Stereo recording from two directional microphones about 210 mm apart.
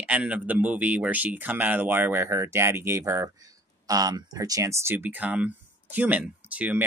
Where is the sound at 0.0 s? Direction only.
5° right (ahead or behind).